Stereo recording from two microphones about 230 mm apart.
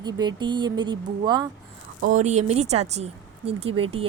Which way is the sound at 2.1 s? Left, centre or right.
Right.